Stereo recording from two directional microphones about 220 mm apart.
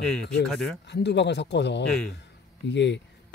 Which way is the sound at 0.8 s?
50° left (ahead or behind).